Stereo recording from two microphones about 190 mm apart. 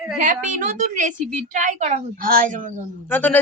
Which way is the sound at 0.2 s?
40° right (ahead or behind).